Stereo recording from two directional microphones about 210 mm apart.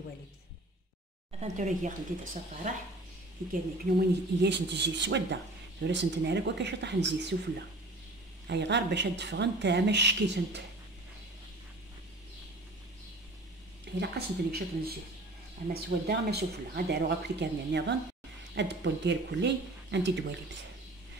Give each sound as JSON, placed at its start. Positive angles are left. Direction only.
{"t": 1.4, "sound": "speech", "side_deg": -35}
{"t": 3.9, "sound": "speech", "side_deg": -55}
{"t": 8.5, "sound": "speech", "side_deg": -55}
{"t": 13.9, "sound": "speech", "side_deg": -50}